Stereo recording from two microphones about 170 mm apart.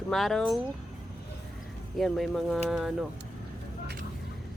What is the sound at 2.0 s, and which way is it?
Speech, centre (ahead or behind).